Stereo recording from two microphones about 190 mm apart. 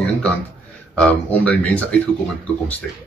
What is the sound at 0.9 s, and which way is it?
Speech, 5° left (ahead or behind).